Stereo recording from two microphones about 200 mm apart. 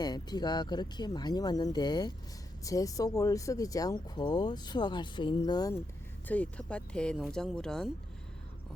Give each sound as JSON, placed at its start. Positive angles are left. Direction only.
{"t": 0.0, "sound": "speech", "side_deg": 20}
{"t": 6.2, "sound": "speech", "side_deg": 5}